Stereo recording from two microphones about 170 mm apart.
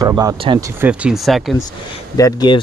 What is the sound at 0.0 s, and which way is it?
Speech, 20° right (ahead or behind).